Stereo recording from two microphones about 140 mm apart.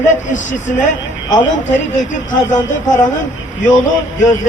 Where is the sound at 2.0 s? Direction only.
65° left (ahead or behind).